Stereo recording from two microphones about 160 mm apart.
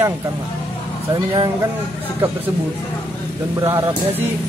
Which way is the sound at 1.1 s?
30° right (ahead or behind).